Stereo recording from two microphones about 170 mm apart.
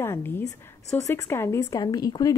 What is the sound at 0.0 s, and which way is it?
A woman's voice, 15° left (ahead or behind).